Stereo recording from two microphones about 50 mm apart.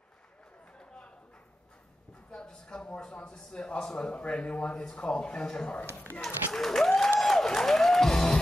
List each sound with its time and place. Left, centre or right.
0.7 s a sound: left
2.3 s speech: centre
6.2 s speech: centre
7.2 s music: centre